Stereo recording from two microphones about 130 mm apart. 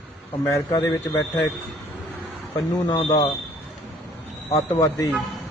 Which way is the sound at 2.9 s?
30° left (ahead or behind).